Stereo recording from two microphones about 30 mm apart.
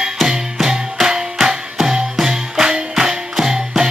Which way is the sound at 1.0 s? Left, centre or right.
Right.